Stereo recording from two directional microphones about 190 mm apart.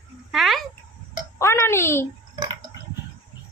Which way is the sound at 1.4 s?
15° left (ahead or behind).